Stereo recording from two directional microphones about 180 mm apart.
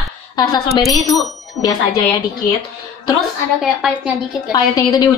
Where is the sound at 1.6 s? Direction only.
20° left (ahead or behind).